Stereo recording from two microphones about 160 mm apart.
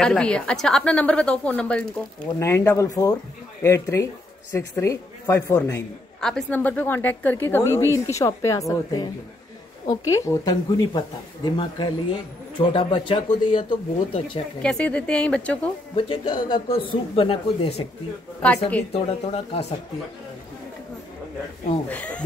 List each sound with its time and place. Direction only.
0.0 s a woman's voice: 5° left (ahead or behind)
6.2 s a woman's voice: 5° left (ahead or behind); by 14.4 s 35° left (ahead or behind)
14.6 s a woman's voice: 5° left (ahead or behind)
16.0 s speech: 30° left (ahead or behind)
18.4 s a woman's voice: 10° left (ahead or behind)
18.9 s speech: 40° left (ahead or behind)
21.8 s a woman's voice: 10° left (ahead or behind)